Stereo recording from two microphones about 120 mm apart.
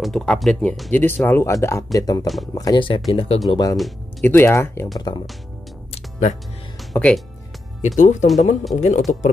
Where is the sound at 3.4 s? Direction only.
35° left (ahead or behind).